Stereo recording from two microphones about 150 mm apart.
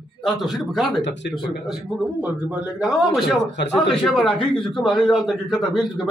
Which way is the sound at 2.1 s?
10° right (ahead or behind).